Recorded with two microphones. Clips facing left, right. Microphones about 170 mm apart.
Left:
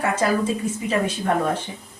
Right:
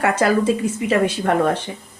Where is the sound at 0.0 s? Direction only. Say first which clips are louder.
Right 4 dB; 75° right (ahead or behind).